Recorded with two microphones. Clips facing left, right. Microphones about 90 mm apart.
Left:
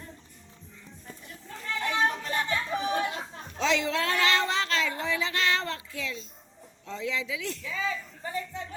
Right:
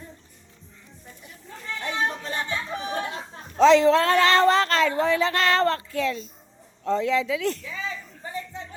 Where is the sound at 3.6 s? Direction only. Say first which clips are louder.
Right 11 dB; 40° right (ahead or behind).